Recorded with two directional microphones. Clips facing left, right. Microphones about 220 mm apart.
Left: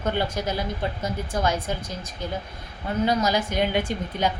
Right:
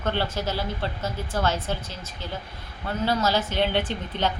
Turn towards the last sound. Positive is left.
turn(degrees=10)  # may be behind; listen again after turning